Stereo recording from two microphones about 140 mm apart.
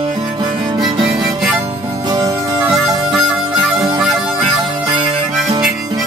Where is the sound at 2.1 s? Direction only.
25° right (ahead or behind).